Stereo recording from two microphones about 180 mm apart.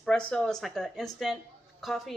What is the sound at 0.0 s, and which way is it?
A woman's voice, 5° left (ahead or behind).